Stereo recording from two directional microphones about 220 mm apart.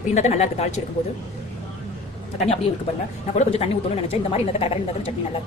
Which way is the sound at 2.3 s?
30° left (ahead or behind).